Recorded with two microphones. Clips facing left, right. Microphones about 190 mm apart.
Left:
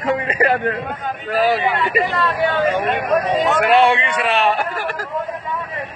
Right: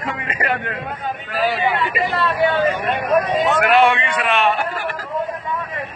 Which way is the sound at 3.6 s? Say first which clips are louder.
Left 1 dB; 35° left (ahead or behind).